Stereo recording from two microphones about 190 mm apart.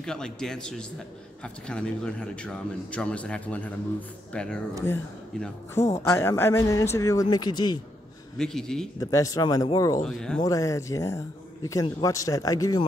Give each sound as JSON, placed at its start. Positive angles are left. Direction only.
{"t": 0.0, "sound": "a man's voice", "side_deg": 5}
{"t": 5.8, "sound": "speech", "side_deg": 35}
{"t": 6.0, "sound": "a man's voice", "side_deg": 15}
{"t": 8.4, "sound": "a man's voice", "side_deg": 5}
{"t": 9.0, "sound": "speech", "side_deg": 15}
{"t": 10.0, "sound": "a man's voice", "side_deg": 5}
{"t": 10.4, "sound": "a man's voice", "side_deg": 20}